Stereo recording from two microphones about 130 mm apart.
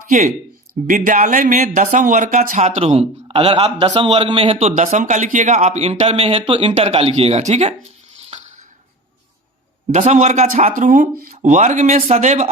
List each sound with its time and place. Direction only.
0.1 s speech: 65° right (ahead or behind)
0.9 s a man's voice: 80° right; by 4.7 s 45° right (ahead or behind)
4.7 s speech: 65° right (ahead or behind); by 6.7 s 45° right (ahead or behind)
6.7 s speech: 55° right (ahead or behind)
9.9 s speech: 60° right (ahead or behind)